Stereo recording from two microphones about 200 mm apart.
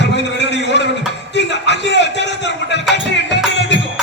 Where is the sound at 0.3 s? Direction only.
60° left (ahead or behind).